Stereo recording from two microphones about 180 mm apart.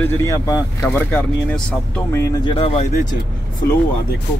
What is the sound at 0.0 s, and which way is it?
Speech, 15° left (ahead or behind).